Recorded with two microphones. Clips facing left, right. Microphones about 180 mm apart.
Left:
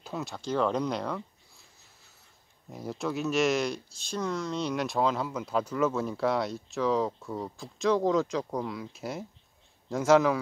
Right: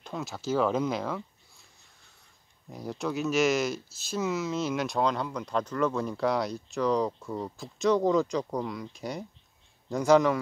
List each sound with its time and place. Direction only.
0.0 s speech: centre (ahead or behind)
2.7 s speech: centre (ahead or behind)